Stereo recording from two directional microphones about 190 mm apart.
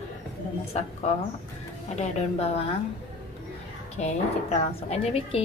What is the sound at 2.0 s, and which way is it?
Speech, 35° left (ahead or behind).